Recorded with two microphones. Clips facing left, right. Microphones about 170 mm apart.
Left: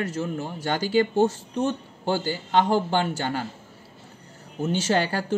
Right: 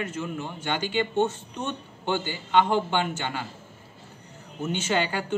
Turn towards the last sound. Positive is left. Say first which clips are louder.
# left 3 dB
turn(degrees=40)  # may be behind; listen again after turning